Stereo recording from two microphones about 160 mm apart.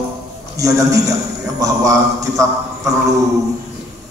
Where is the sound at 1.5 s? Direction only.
20° right (ahead or behind).